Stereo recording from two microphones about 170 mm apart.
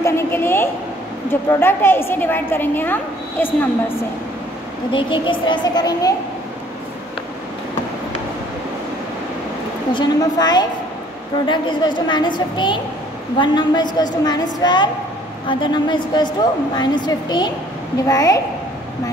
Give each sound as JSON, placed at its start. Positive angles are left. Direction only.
{"t": 0.0, "sound": "a sound", "side_deg": 15}
{"t": 1.3, "sound": "a woman's voice", "side_deg": 15}
{"t": 4.9, "sound": "a woman's voice", "side_deg": 30}
{"t": 9.9, "sound": "a woman's voice", "side_deg": 25}